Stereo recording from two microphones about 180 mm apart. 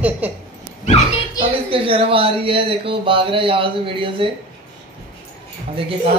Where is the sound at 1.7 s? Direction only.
30° right (ahead or behind).